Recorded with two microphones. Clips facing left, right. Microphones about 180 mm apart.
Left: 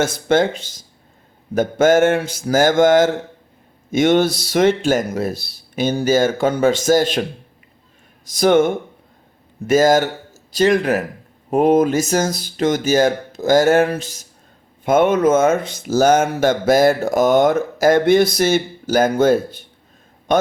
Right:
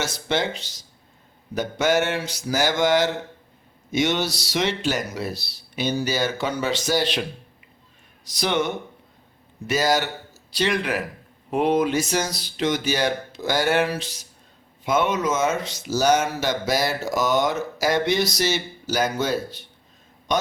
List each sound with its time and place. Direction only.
0.0 s a man's voice: 50° left (ahead or behind)